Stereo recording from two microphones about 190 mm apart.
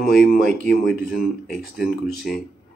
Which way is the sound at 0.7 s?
55° left (ahead or behind).